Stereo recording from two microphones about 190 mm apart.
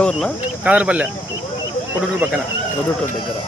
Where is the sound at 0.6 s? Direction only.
5° right (ahead or behind).